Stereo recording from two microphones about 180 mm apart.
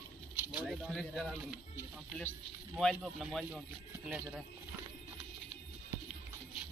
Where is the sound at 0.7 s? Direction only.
Centre (ahead or behind).